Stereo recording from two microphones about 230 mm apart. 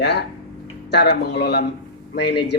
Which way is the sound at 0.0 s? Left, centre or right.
Left.